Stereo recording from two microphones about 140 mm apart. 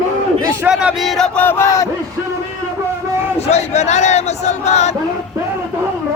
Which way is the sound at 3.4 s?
50° left (ahead or behind).